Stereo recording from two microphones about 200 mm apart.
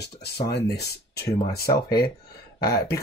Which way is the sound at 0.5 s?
55° left (ahead or behind).